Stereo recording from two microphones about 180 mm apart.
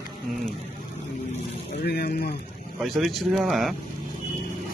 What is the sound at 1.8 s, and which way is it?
Speech, 60° left (ahead or behind).